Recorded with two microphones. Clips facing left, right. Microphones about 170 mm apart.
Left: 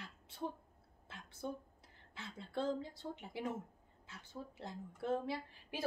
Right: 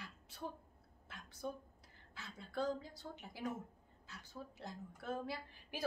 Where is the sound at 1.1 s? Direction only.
25° left (ahead or behind).